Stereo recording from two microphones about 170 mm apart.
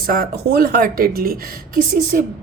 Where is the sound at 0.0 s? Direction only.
60° right (ahead or behind).